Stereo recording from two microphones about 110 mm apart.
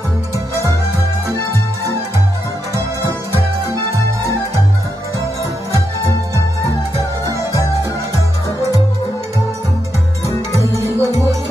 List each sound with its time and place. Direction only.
2.7 s music: 30° right (ahead or behind)
10.8 s music: 25° right (ahead or behind)